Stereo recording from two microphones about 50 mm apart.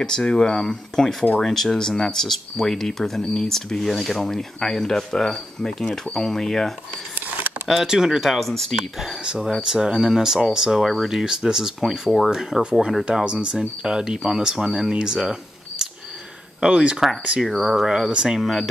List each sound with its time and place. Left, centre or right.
0.0 s speech: centre
7.6 s speech: centre
8.3 s speech: centre
9.0 s speech: centre
13.1 s speech: right
16.6 s speech: right
17.6 s speech: centre
18.4 s speech: centre